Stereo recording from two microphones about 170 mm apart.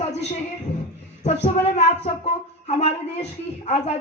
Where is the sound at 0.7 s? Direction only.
40° left (ahead or behind).